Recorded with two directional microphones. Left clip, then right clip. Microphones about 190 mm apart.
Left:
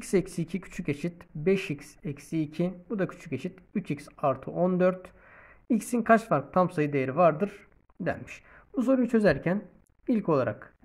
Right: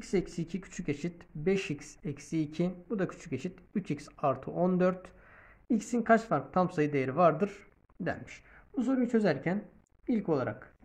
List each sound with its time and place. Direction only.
0.0 s speech: 40° left (ahead or behind); by 5.1 s 20° left (ahead or behind)
5.7 s speech: 30° left (ahead or behind); by 7.6 s 10° left (ahead or behind)
8.3 s speech: 45° left (ahead or behind)